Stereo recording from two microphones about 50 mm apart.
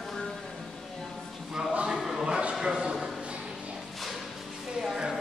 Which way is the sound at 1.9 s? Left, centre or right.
Centre.